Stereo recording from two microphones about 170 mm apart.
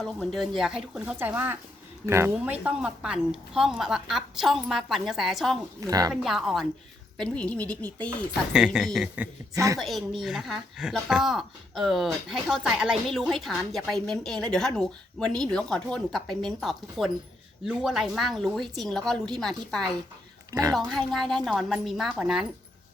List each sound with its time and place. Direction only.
0.0 s speech: 5° left (ahead or behind)
5.8 s speech: 20° right (ahead or behind)
6.2 s speech: centre (ahead or behind)
8.5 s speech: 5° right (ahead or behind)
9.1 s a man's voice: 15° right (ahead or behind)
9.7 s speech: centre (ahead or behind)
20.5 s speech: 20° right (ahead or behind)
20.7 s speech: centre (ahead or behind)